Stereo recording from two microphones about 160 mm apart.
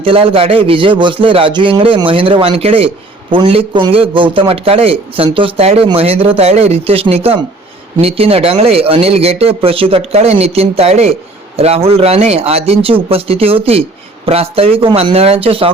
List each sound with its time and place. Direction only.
0.0 s a man's voice: 35° right (ahead or behind)